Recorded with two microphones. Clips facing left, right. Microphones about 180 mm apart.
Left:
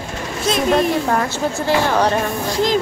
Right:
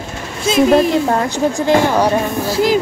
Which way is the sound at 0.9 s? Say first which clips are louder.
Right 3 dB; 20° right (ahead or behind).